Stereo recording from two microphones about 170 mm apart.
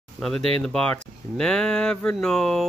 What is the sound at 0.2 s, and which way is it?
Speech, 5° left (ahead or behind).